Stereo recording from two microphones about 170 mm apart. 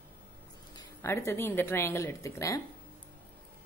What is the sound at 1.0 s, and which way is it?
A woman's voice, 15° left (ahead or behind).